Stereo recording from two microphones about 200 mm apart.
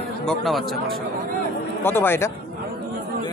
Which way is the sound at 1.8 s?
10° left (ahead or behind).